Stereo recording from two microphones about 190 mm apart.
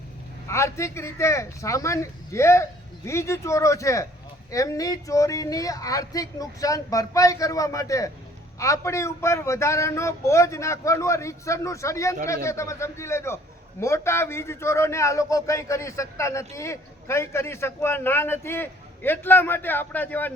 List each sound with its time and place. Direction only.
0.4 s a man's voice: 15° left (ahead or behind)